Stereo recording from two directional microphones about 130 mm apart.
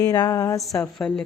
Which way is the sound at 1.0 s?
10° left (ahead or behind).